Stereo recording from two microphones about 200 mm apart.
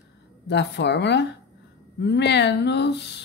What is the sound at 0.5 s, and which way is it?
Speech, 60° left (ahead or behind).